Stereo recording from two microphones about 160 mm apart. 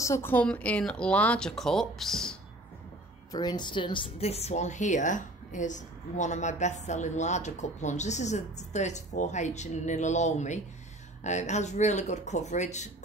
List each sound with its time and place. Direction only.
0.0 s speech: 15° left (ahead or behind)
3.3 s a woman's voice: 25° left (ahead or behind); by 12.9 s 45° left (ahead or behind)